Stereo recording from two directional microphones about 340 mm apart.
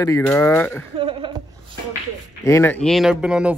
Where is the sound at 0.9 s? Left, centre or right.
Centre.